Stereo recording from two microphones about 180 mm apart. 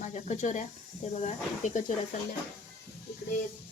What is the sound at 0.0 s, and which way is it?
Speech, 40° left (ahead or behind).